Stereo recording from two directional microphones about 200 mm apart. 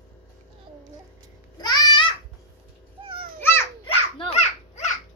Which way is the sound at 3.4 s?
10° left (ahead or behind).